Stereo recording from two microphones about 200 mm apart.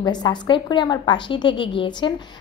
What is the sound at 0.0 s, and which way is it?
A woman's voice, 20° left (ahead or behind).